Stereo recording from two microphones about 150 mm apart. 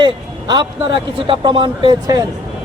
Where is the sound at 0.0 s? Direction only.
30° right (ahead or behind).